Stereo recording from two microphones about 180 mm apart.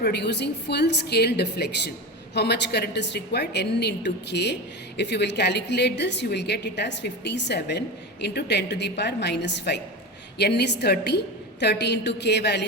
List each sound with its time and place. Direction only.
0.0 s a woman's voice: 65° left (ahead or behind)